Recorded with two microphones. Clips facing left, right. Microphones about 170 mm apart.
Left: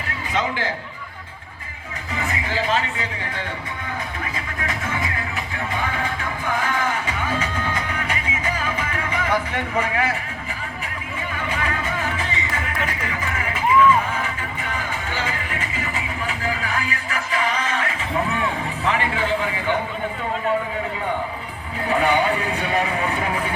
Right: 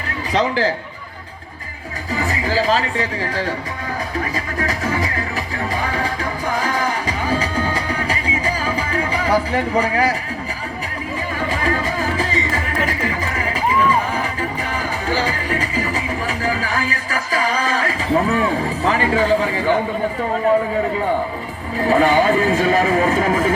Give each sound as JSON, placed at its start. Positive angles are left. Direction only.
{"t": 0.3, "sound": "speech", "side_deg": -35}
{"t": 2.1, "sound": "speech", "side_deg": -35}
{"t": 4.2, "sound": "music", "side_deg": -40}
{"t": 11.3, "sound": "music", "side_deg": -35}
{"t": 18.5, "sound": "a sound", "side_deg": -40}
{"t": 21.8, "sound": "speech", "side_deg": -40}